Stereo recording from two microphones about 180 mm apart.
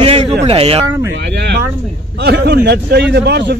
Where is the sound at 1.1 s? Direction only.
70° right (ahead or behind).